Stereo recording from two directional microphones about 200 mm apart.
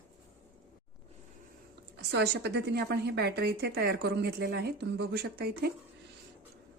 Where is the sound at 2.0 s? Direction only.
55° right (ahead or behind).